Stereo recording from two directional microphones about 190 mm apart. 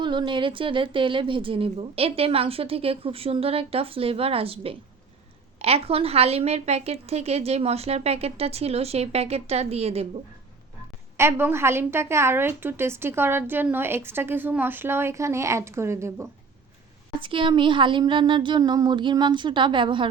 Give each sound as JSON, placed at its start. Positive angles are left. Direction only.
{"t": 0.0, "sound": "a woman's voice", "side_deg": -25}
{"t": 11.2, "sound": "a woman's voice", "side_deg": -10}
{"t": 17.2, "sound": "a woman's voice", "side_deg": -25}